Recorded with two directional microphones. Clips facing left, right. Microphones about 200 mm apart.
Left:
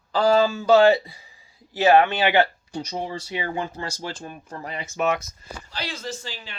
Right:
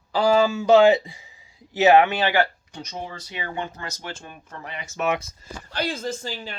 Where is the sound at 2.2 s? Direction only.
20° left (ahead or behind).